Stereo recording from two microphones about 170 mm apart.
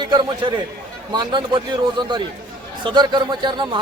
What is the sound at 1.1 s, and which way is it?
A man's voice, 25° right (ahead or behind).